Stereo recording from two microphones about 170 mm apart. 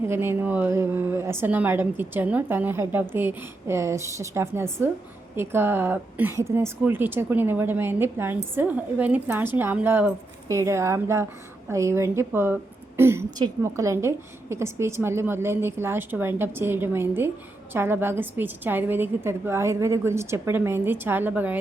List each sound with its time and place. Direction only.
0.0 s a woman's voice: 15° right (ahead or behind)